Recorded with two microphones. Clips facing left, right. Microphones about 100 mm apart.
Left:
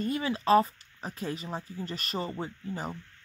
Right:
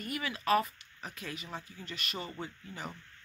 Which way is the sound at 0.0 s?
30° left (ahead or behind).